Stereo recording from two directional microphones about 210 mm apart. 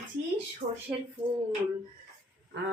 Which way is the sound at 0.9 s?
5° right (ahead or behind).